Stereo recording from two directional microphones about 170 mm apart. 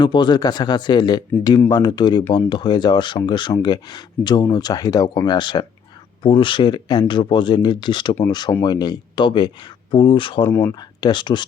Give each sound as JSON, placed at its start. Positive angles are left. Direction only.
{"t": 0.0, "sound": "speech", "side_deg": 25}
{"t": 1.3, "sound": "speech", "side_deg": 15}
{"t": 10.4, "sound": "speech", "side_deg": 15}
{"t": 10.8, "sound": "speech", "side_deg": 25}